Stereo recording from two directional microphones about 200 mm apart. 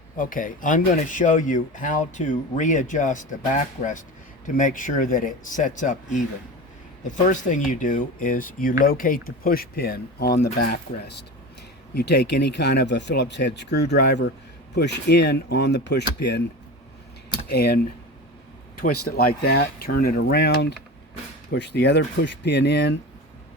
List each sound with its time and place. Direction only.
0.2 s speech: 40° left (ahead or behind)
17.5 s speech: 50° left (ahead or behind)
18.8 s speech: 50° left (ahead or behind)